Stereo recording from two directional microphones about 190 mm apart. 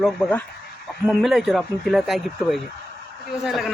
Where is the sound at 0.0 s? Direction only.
5° left (ahead or behind).